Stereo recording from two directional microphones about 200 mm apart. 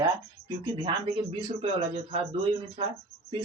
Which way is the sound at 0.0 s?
15° right (ahead or behind).